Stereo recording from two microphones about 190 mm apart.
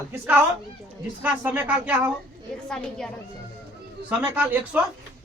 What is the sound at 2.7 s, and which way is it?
Speech, 5° left (ahead or behind).